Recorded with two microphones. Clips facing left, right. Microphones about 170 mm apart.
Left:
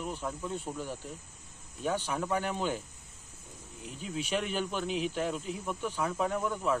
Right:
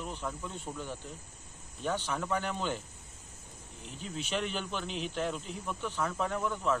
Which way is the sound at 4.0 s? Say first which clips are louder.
Left 2 dB; 10° left (ahead or behind).